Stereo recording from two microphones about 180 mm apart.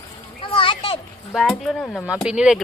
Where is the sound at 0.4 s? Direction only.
30° left (ahead or behind).